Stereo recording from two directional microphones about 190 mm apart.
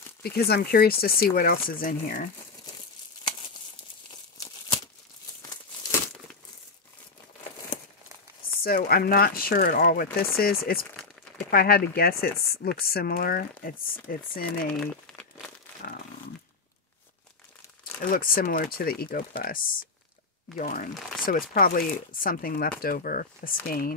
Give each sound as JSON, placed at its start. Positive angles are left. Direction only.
{"t": 0.2, "sound": "speech", "side_deg": 55}
{"t": 8.6, "sound": "speech", "side_deg": 50}
{"t": 15.1, "sound": "crumpling", "side_deg": 5}
{"t": 18.1, "sound": "speech", "side_deg": 50}